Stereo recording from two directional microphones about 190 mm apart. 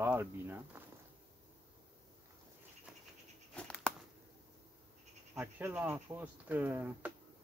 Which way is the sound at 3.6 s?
5° left (ahead or behind).